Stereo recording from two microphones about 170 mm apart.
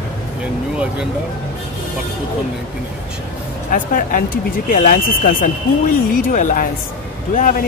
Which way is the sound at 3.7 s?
50° left (ahead or behind).